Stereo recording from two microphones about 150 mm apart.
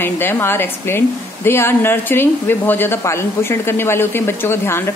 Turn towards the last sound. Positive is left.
turn(degrees=15)  # may be behind; listen again after turning